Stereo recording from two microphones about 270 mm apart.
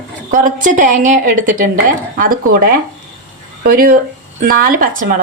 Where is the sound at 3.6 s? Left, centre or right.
Right.